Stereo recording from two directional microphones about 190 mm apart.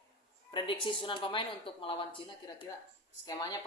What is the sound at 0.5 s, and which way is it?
A woman's voice, 25° left (ahead or behind).